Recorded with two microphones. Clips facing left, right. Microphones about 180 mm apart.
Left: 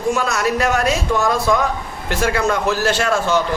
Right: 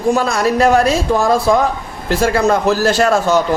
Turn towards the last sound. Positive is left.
turn(degrees=-40)  # may be behind; listen again after turning